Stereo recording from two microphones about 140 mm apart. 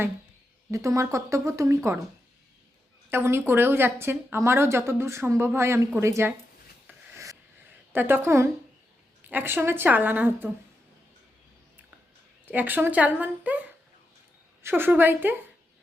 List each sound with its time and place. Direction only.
0.7 s speech: 20° right (ahead or behind)
3.1 s speech: 15° right (ahead or behind)
7.9 s speech: 15° right (ahead or behind)
12.5 s speech: 15° right (ahead or behind)